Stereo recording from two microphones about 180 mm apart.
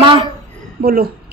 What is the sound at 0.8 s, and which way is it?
Speech, 60° right (ahead or behind).